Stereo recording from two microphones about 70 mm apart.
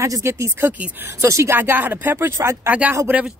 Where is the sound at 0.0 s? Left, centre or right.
Right.